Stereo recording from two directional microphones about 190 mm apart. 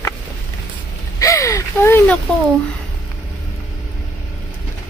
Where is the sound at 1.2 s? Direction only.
15° left (ahead or behind).